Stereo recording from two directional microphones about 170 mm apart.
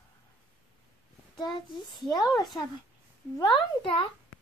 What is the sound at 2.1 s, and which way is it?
A child's voice, 25° left (ahead or behind).